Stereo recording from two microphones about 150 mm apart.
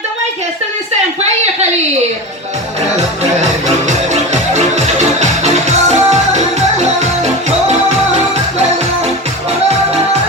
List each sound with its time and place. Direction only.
3.8 s music: 50° right (ahead or behind)